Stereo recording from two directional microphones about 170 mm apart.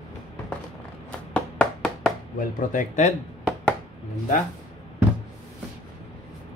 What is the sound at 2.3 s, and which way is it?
Speech, 50° left (ahead or behind).